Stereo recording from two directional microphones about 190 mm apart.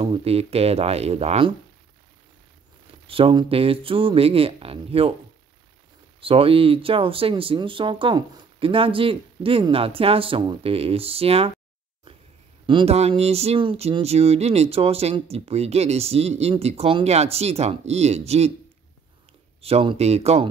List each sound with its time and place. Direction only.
0.0 s speech: 30° right (ahead or behind)
3.1 s speech: 30° right (ahead or behind)
6.2 s speech: 30° right (ahead or behind)
12.6 s speech: 30° right (ahead or behind)
19.6 s speech: 30° right (ahead or behind)